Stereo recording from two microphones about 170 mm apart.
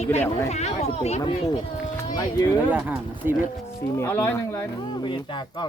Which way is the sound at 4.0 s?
15° left (ahead or behind).